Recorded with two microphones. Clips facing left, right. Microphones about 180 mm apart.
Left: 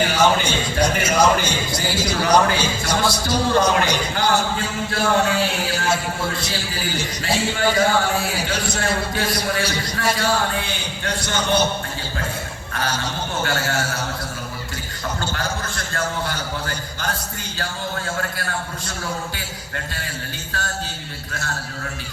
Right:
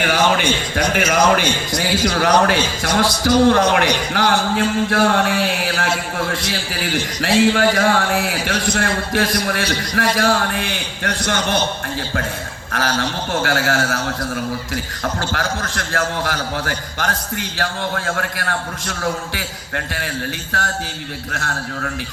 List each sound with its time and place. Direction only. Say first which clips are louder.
0.0 s a man's voice: right 1 dB; 70° right (ahead or behind)
7.2 s a man's voice: right 8 dB; 80° right
12.7 s a man's voice: right 5 dB; 80° right
15.2 s a man's voice: right 3 dB; 75° right (ahead or behind)